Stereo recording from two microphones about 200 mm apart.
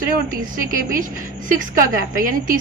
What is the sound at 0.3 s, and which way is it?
A woman's voice, 45° right (ahead or behind).